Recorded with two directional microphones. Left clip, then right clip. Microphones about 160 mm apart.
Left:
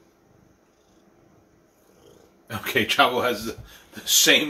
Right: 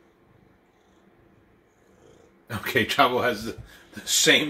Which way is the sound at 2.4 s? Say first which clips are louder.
Left 1 dB; 65° right (ahead or behind).